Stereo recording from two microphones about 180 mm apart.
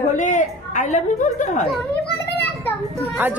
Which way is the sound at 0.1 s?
45° left (ahead or behind).